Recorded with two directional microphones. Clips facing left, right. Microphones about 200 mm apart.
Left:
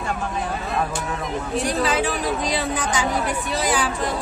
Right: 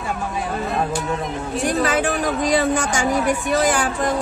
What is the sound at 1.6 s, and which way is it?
A woman's voice, 50° right (ahead or behind).